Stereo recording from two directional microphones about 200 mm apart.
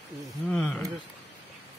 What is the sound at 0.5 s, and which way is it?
Speech, centre (ahead or behind).